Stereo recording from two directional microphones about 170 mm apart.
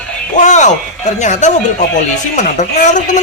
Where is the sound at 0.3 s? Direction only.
45° left (ahead or behind).